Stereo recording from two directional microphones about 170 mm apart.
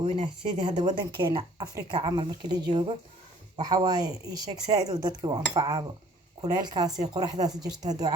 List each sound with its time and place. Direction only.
0.0 s speech: 30° right (ahead or behind)